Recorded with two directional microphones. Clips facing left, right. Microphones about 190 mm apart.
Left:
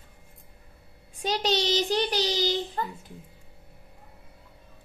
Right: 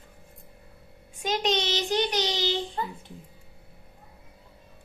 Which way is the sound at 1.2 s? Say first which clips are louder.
Even; 35° left (ahead or behind).